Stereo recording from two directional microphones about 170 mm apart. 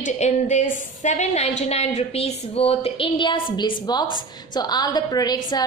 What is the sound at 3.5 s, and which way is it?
A woman's voice, 25° left (ahead or behind).